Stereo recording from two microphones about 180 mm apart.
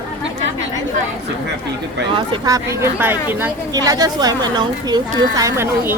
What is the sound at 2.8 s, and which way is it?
A woman's voice, 10° right (ahead or behind).